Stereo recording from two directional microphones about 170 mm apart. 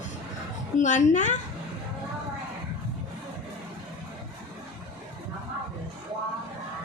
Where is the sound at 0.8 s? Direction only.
45° left (ahead or behind).